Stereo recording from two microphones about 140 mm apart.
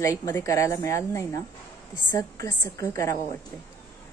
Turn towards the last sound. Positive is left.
turn(degrees=20)  # may be behind; listen again after turning